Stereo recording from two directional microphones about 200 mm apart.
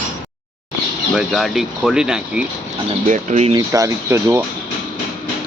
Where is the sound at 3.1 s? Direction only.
35° right (ahead or behind).